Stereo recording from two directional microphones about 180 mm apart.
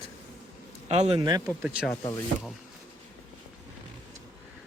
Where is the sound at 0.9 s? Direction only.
35° right (ahead or behind).